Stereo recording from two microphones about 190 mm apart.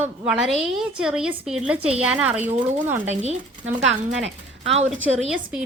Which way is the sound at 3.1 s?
35° right (ahead or behind).